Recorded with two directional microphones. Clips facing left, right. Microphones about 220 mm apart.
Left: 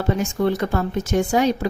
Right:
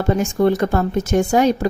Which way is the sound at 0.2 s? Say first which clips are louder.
Right 4 dB; 45° right (ahead or behind).